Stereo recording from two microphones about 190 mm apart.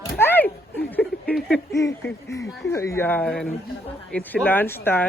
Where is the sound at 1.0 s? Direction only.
5° left (ahead or behind).